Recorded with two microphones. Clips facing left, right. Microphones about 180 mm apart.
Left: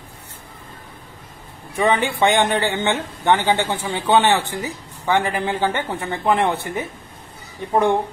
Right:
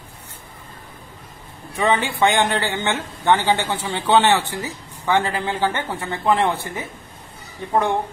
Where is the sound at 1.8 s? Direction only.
20° left (ahead or behind).